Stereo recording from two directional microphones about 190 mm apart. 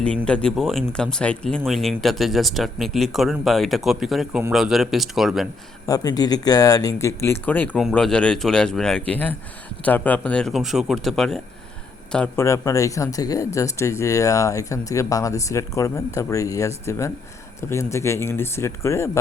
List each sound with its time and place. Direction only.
0.3 s speech: 5° left (ahead or behind)
5.8 s speech: 20° left (ahead or behind)